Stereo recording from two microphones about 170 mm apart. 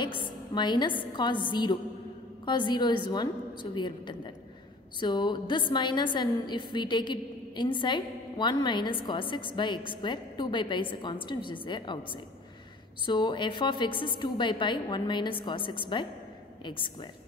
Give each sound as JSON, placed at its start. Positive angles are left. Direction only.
{"t": 0.0, "sound": "a woman's voice", "side_deg": 25}